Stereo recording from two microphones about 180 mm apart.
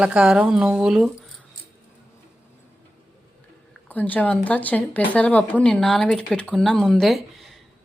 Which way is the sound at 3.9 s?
10° left (ahead or behind).